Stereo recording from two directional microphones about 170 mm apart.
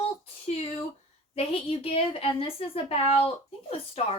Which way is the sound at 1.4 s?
35° left (ahead or behind).